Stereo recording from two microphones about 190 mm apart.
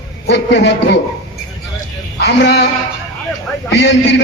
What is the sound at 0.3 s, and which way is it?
Speech, 65° left (ahead or behind).